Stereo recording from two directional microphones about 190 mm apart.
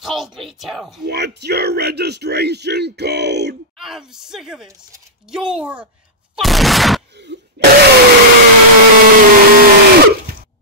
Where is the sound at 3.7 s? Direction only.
Centre (ahead or behind).